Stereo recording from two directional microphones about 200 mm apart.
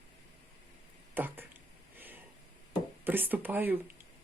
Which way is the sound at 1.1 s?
10° right (ahead or behind).